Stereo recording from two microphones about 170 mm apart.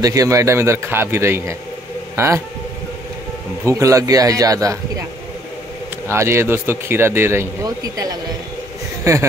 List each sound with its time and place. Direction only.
0.0 s speech: 20° right (ahead or behind)
3.6 s a man's voice: 20° right (ahead or behind)
6.0 s speech: 15° right (ahead or behind)